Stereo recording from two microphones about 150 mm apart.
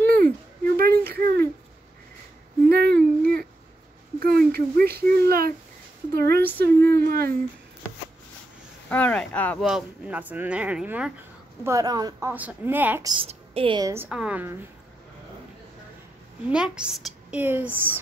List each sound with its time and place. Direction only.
0.0 s a sound: 85° right
2.7 s a sound: 90° right
4.2 s speech: 90° right
8.9 s speech: 10° left (ahead or behind)
9.7 s speech: 5° right (ahead or behind)
11.6 s a woman's voice: 25° right (ahead or behind)
12.3 s speech: 10° right (ahead or behind)
13.0 s a woman's voice: 30° right (ahead or behind)
13.3 s a sound: 40° right (ahead or behind)
13.7 s a woman's voice: 20° right (ahead or behind)
14.0 s speech: 10° right (ahead or behind)
16.4 s speech: 5° right (ahead or behind)